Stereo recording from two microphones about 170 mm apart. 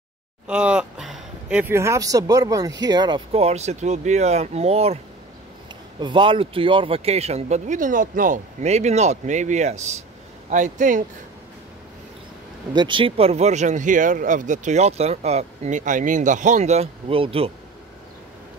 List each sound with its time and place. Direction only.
0.5 s speech: 5° right (ahead or behind); by 3.2 s 25° right (ahead or behind)
3.3 s speech: 40° right (ahead or behind)
5.9 s speech: 30° right (ahead or behind); by 11.1 s 45° right (ahead or behind)
12.7 s speech: 30° right (ahead or behind)